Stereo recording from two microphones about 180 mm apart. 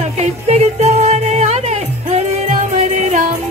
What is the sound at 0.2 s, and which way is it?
Music, 40° right (ahead or behind).